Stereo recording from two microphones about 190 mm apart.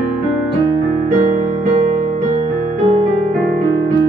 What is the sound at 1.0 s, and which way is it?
Music, 40° right (ahead or behind).